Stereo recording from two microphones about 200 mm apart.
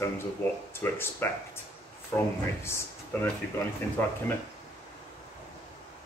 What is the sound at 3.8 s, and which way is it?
Speech, 10° left (ahead or behind).